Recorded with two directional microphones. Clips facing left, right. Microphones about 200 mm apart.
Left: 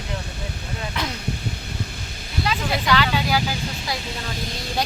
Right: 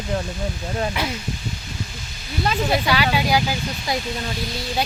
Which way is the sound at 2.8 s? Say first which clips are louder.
Right 1 dB; 10° right (ahead or behind).